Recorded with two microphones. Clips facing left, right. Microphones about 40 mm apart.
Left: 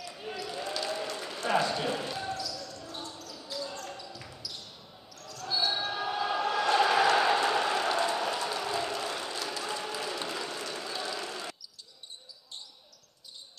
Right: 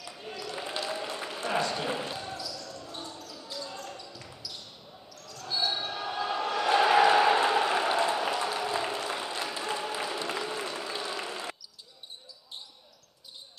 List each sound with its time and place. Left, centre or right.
0.0 s basketball bounce: centre
0.6 s a sound: right
1.5 s speech: centre
2.1 s basketball bounce: centre
8.0 s a sound: centre
9.1 s applause: centre